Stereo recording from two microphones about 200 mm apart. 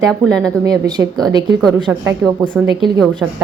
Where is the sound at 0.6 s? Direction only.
20° right (ahead or behind).